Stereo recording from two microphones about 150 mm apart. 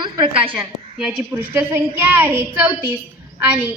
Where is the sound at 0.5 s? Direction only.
5° right (ahead or behind).